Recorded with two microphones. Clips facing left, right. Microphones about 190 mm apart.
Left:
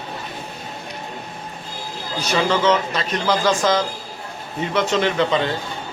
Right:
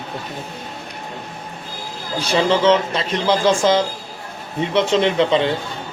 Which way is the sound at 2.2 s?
30° right (ahead or behind).